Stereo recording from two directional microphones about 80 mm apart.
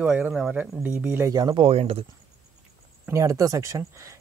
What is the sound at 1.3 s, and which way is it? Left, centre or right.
Speech, right.